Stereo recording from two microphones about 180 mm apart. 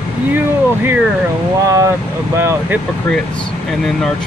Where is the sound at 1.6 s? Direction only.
20° right (ahead or behind).